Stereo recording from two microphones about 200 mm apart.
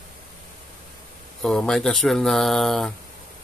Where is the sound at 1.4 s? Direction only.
5° left (ahead or behind).